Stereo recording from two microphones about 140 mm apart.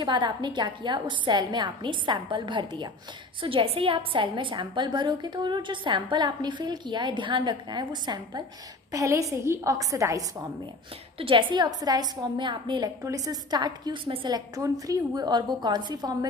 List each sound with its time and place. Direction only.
0.0 s a woman's voice: 35° right (ahead or behind)
11.1 s a woman's voice: 40° right (ahead or behind)